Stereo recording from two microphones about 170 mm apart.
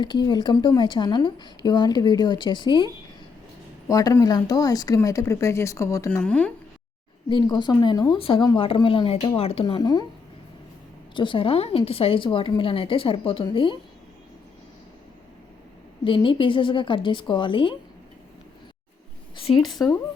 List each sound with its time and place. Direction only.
0.0 s a woman's voice: 25° left (ahead or behind); by 6.5 s 10° left (ahead or behind)
7.3 s a woman's voice: 25° left (ahead or behind)
11.1 s speech: 30° left (ahead or behind)
16.0 s a woman's voice: 30° left (ahead or behind)
19.4 s a woman's voice: 30° left (ahead or behind)